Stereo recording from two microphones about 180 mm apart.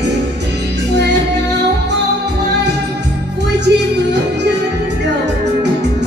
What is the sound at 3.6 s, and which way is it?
Music, 70° right (ahead or behind).